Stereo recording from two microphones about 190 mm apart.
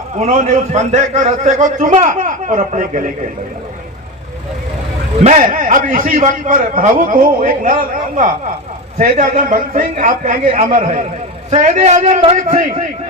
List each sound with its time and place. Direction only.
0.2 s a man's voice: 40° right (ahead or behind)
5.2 s a man's voice: 40° right (ahead or behind)